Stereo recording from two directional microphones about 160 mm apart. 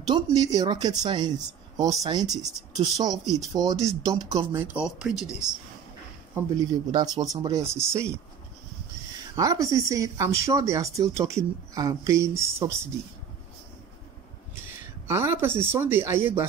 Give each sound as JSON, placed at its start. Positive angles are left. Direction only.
{"t": 0.0, "sound": "speech", "side_deg": -25}
{"t": 4.8, "sound": "speech", "side_deg": -5}
{"t": 6.9, "sound": "speech", "side_deg": -25}
{"t": 9.3, "sound": "speech", "side_deg": -20}
{"t": 15.0, "sound": "speech", "side_deg": -15}